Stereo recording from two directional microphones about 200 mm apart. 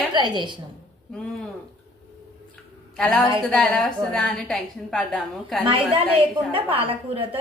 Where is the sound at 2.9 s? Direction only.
5° left (ahead or behind).